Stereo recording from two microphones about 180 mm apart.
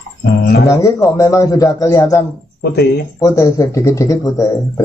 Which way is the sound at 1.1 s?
20° left (ahead or behind).